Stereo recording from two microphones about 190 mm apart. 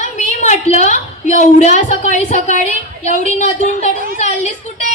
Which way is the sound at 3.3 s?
35° left (ahead or behind).